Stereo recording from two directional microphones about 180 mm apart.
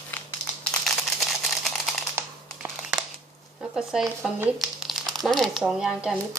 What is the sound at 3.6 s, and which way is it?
Speech, 5° right (ahead or behind).